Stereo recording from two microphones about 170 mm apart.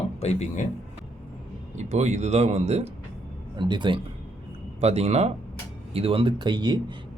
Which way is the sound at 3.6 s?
25° right (ahead or behind).